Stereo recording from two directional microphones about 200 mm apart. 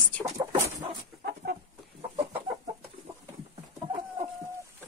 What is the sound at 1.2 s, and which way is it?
Chicken, 55° right (ahead or behind).